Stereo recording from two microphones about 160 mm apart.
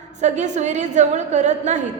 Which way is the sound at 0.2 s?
45° right (ahead or behind).